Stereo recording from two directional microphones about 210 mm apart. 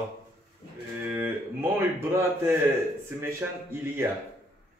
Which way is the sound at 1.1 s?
10° right (ahead or behind).